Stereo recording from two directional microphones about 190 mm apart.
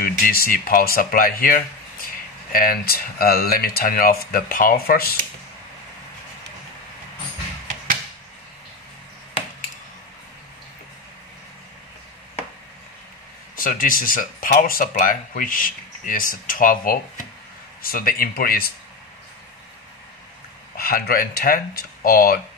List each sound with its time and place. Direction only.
0.0 s speech: 50° left (ahead or behind)
13.6 s speech: 45° left (ahead or behind)
20.7 s speech: 50° left (ahead or behind)